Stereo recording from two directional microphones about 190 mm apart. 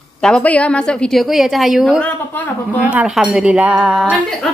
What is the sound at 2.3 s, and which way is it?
Speech, 10° left (ahead or behind).